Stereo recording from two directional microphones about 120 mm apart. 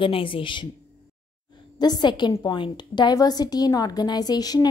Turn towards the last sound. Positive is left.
turn(degrees=35)  # may be behind; listen again after turning